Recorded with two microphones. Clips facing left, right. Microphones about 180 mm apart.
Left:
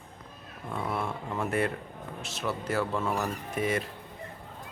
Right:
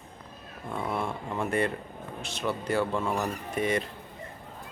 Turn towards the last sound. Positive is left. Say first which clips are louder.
# right 1 dB
turn(degrees=5)  # may be behind; listen again after turning